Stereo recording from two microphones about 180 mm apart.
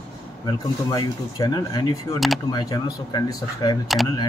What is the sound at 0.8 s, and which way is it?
Speech, 20° left (ahead or behind).